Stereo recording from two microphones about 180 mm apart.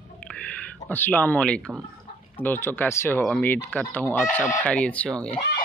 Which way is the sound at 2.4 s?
10° left (ahead or behind).